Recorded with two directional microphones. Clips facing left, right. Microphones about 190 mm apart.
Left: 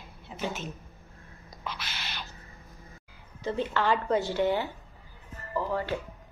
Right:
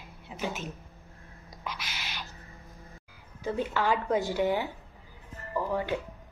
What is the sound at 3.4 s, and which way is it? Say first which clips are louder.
A woman's voice: left 1 dB; 10° right (ahead or behind).